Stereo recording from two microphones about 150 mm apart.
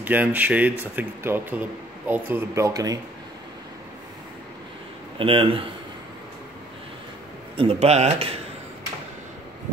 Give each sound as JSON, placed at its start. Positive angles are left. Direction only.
{"t": 0.0, "sound": "speech", "side_deg": -10}
{"t": 5.2, "sound": "speech", "side_deg": -35}
{"t": 7.5, "sound": "speech", "side_deg": -45}